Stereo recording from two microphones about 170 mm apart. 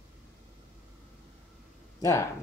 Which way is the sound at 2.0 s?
15° left (ahead or behind).